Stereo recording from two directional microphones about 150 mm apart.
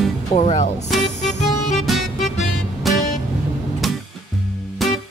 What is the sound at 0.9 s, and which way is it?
Music, centre (ahead or behind).